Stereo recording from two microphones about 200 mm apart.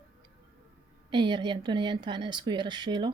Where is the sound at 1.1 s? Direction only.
25° right (ahead or behind).